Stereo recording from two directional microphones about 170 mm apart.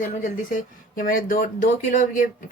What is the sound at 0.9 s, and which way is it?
Speech, 55° left (ahead or behind).